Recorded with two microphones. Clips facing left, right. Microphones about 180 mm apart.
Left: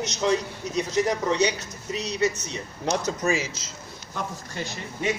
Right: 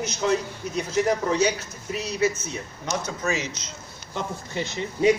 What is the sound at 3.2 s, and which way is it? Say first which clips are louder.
Speech: left 2 dB; 10° left (ahead or behind).